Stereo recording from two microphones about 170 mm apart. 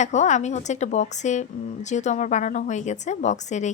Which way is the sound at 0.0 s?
45° left (ahead or behind).